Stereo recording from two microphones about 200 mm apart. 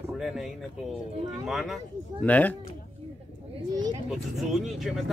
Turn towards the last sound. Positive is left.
turn(degrees=0)  # may be behind; listen again after turning